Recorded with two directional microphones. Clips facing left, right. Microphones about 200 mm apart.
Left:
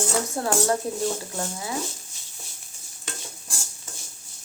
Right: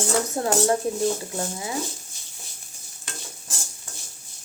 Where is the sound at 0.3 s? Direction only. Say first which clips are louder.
Right 1 dB; 20° right (ahead or behind).